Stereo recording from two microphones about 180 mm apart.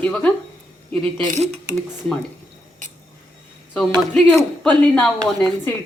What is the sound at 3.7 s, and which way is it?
Speech, 5° left (ahead or behind).